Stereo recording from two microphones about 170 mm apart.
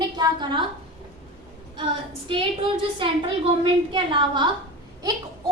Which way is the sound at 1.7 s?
30° right (ahead or behind).